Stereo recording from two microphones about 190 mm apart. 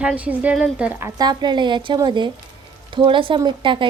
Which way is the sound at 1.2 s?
20° right (ahead or behind).